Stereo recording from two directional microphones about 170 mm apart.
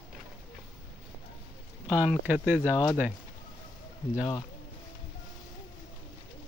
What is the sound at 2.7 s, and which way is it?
Speech, 20° left (ahead or behind).